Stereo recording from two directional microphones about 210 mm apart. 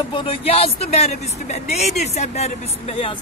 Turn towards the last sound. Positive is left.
turn(degrees=30)  # may be behind; listen again after turning